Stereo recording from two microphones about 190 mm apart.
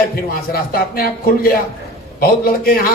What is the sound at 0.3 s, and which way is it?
A man's voice, 50° left (ahead or behind).